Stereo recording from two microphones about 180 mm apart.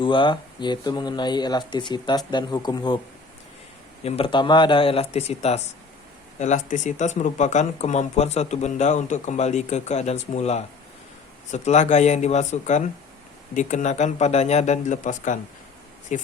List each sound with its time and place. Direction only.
0.0 s speech: 25° left (ahead or behind)
4.0 s speech: 30° left (ahead or behind)